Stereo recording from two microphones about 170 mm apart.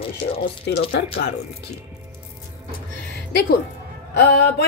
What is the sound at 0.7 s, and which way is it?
Speech, 80° left.